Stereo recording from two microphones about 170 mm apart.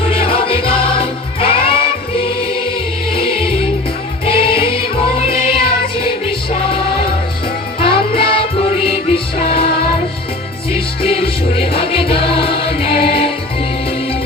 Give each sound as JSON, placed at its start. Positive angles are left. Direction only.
{"t": 0.1, "sound": "music", "side_deg": 35}
{"t": 3.1, "sound": "music", "side_deg": 30}
{"t": 10.7, "sound": "music", "side_deg": 35}